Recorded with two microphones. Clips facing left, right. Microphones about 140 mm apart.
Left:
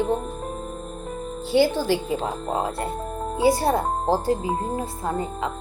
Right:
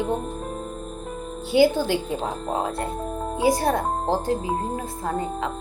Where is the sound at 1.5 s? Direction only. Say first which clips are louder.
Right 1 dB; centre (ahead or behind).